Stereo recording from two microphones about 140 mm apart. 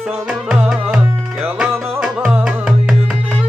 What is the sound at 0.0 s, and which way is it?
Music, 5° right (ahead or behind).